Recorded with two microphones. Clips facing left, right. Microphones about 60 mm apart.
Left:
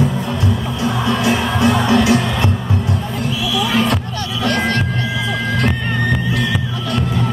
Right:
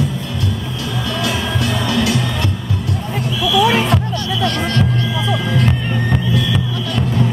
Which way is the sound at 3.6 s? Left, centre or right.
Right.